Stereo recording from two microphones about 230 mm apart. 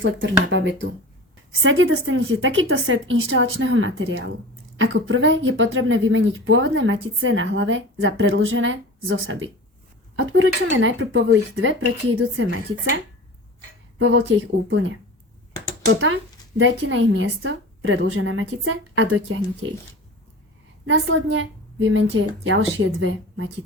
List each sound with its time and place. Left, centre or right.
0.0 s a woman's voice: right
14.0 s a woman's voice: right
20.8 s a woman's voice: right